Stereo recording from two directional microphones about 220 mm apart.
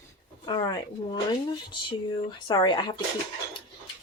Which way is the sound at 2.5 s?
20° left (ahead or behind).